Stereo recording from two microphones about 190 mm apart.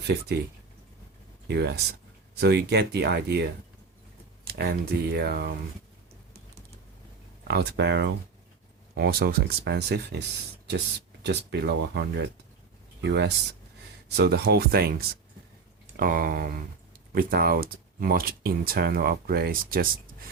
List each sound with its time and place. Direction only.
1.5 s speech: 60° right (ahead or behind)
7.4 s speech: 60° right (ahead or behind)
9.0 s speech: 55° right (ahead or behind)